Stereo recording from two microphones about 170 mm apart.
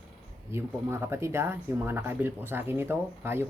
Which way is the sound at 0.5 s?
15° right (ahead or behind).